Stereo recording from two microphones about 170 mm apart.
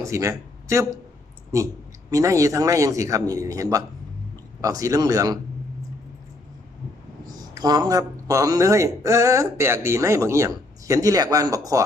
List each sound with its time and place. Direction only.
0.0 s speech: 15° right (ahead or behind)
2.0 s speech: 20° right (ahead or behind)
7.5 s speech: 25° right (ahead or behind)